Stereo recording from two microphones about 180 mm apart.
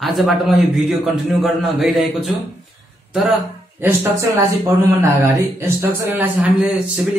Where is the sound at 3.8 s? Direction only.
10° right (ahead or behind).